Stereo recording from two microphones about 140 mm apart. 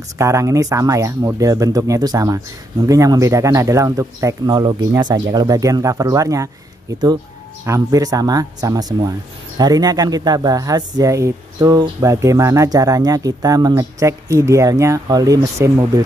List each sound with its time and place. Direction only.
0.2 s speech: 20° right (ahead or behind)
7.6 s speech: 25° right (ahead or behind)